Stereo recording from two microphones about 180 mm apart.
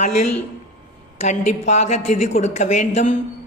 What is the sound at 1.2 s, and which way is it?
A man's voice, 40° left (ahead or behind).